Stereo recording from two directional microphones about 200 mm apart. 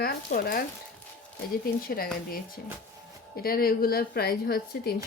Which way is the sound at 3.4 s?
50° left (ahead or behind).